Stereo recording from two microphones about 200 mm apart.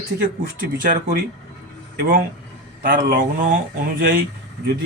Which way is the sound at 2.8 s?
45° right (ahead or behind).